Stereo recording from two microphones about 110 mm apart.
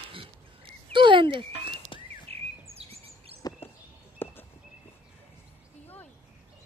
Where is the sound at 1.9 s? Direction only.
50° left (ahead or behind).